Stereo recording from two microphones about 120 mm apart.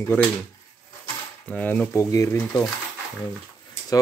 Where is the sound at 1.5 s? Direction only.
15° left (ahead or behind).